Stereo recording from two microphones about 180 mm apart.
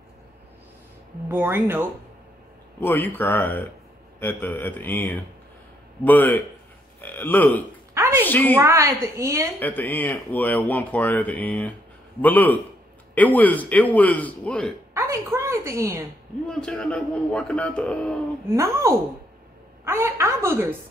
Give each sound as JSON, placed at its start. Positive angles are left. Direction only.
{"t": 1.3, "sound": "a woman's voice", "side_deg": -10}
{"t": 2.8, "sound": "speech", "side_deg": 10}
{"t": 7.9, "sound": "a sound", "side_deg": -15}
{"t": 8.2, "sound": "speech", "side_deg": 10}
{"t": 8.5, "sound": "a woman's voice", "side_deg": -15}
{"t": 9.6, "sound": "speech", "side_deg": 10}
{"t": 15.0, "sound": "a woman's voice", "side_deg": -15}
{"t": 16.4, "sound": "a man's voice", "side_deg": 5}
{"t": 18.5, "sound": "a woman's voice", "side_deg": -15}